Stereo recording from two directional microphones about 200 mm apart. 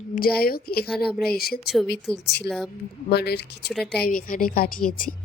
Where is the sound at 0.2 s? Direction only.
50° left (ahead or behind).